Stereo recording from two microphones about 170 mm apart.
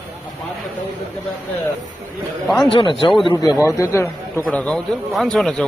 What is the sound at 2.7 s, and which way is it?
Speech, 30° left (ahead or behind).